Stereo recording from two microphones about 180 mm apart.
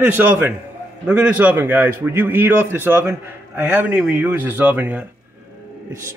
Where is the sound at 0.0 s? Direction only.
10° right (ahead or behind).